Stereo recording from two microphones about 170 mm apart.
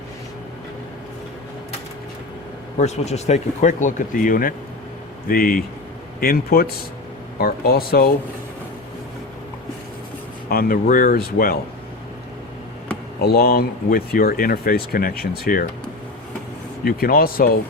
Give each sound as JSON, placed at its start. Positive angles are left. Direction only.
{"t": 2.7, "sound": "speech", "side_deg": 40}
{"t": 10.5, "sound": "speech", "side_deg": 60}
{"t": 13.2, "sound": "speech", "side_deg": 65}
{"t": 16.8, "sound": "speech", "side_deg": 60}